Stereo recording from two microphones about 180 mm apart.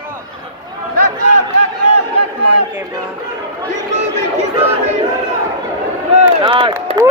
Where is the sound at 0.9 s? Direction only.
45° right (ahead or behind).